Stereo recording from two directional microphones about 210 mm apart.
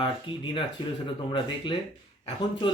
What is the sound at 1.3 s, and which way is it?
Speech, 20° left (ahead or behind).